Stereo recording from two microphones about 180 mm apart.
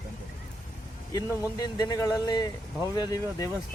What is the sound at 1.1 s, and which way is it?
Speech, 20° left (ahead or behind).